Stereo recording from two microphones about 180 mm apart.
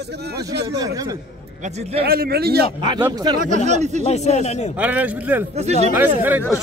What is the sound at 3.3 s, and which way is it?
Speech, 40° right (ahead or behind).